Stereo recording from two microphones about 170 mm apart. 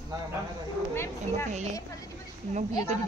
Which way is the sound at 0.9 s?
15° left (ahead or behind).